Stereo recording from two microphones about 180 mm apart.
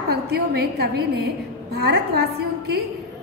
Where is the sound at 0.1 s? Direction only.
60° right (ahead or behind).